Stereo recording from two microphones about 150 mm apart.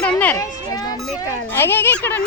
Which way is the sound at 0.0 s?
10° left (ahead or behind).